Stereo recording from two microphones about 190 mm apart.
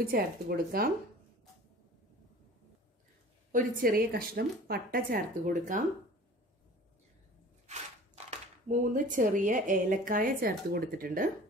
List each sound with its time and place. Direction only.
0.0 s speech: 50° right (ahead or behind)
3.5 s speech: 50° right (ahead or behind)
8.3 s speech: 45° right (ahead or behind)